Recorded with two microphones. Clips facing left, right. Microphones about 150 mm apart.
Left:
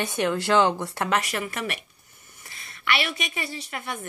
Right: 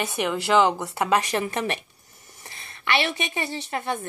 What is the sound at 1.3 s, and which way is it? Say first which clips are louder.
A woman's voice: right 4 dB; 25° right (ahead or behind).